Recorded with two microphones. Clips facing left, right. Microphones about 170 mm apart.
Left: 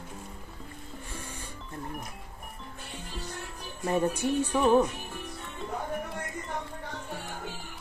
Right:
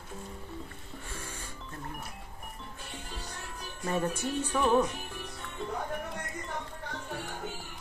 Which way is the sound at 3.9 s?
10° left (ahead or behind).